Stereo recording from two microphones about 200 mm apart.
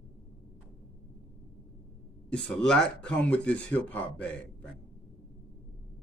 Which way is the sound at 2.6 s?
5° left (ahead or behind).